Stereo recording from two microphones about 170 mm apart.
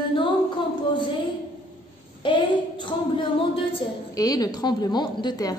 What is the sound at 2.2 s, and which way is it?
A woman's voice, 30° left (ahead or behind).